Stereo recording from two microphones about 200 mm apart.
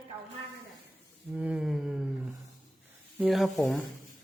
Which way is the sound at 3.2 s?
Centre (ahead or behind).